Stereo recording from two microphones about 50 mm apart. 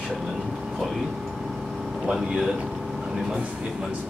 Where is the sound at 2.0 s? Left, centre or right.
Centre.